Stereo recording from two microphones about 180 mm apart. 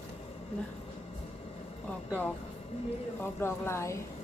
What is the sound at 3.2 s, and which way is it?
Speech, 10° left (ahead or behind).